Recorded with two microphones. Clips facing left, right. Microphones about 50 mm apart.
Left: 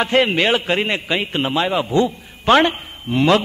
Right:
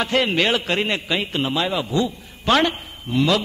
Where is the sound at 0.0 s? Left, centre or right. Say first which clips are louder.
Left 3 dB; left.